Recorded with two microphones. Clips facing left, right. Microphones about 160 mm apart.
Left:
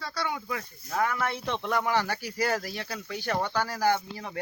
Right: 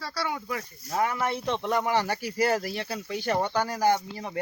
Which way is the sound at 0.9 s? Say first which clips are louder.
Right 1 dB; 20° right (ahead or behind).